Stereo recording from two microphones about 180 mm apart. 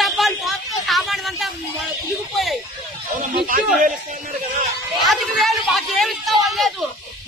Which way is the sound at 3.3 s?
50° right (ahead or behind).